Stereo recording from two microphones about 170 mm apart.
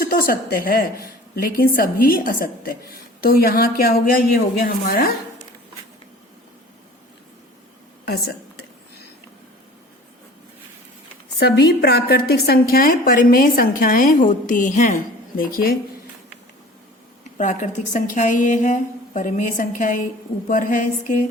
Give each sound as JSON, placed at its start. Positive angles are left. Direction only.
{"t": 0.0, "sound": "a woman's voice", "side_deg": 60}
{"t": 11.3, "sound": "a woman's voice", "side_deg": 70}
{"t": 17.3, "sound": "a woman's voice", "side_deg": 45}